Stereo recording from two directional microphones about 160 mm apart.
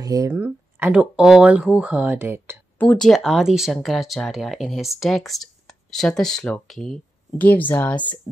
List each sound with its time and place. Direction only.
0.0 s speech: 25° right (ahead or behind)
0.3 s speech: 10° right (ahead or behind)
2.8 s speech: 10° left (ahead or behind)
3.1 s speech: centre (ahead or behind)